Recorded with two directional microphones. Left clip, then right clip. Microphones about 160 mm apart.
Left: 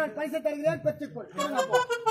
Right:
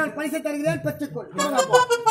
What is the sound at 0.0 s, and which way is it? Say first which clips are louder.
Speech: right 3 dB; 20° left (ahead or behind).